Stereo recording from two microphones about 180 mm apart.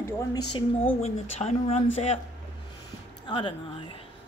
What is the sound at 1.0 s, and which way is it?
Speech, 35° left (ahead or behind).